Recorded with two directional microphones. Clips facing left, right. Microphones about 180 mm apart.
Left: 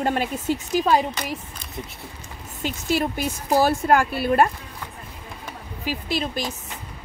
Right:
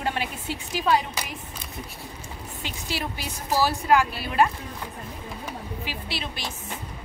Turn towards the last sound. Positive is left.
turn(degrees=45)  # may be behind; listen again after turning